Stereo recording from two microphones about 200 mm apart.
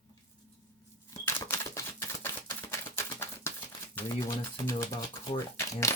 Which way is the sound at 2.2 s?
10° left (ahead or behind).